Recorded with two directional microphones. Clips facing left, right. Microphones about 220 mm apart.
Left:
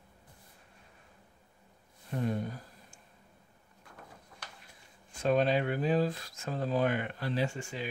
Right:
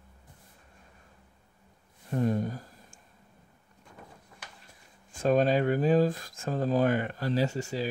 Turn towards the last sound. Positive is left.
turn(degrees=-40)  # may be behind; listen again after turning